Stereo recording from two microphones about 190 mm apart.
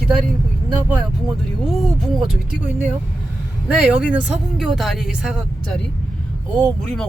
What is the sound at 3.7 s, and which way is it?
Speech, 5° right (ahead or behind).